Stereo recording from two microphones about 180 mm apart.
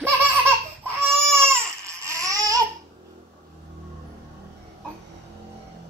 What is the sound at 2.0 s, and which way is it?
Babbling, 20° right (ahead or behind).